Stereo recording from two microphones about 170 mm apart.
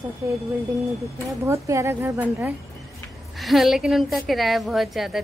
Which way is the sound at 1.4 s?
15° right (ahead or behind).